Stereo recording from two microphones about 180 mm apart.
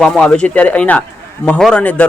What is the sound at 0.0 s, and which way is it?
Speech, 5° left (ahead or behind).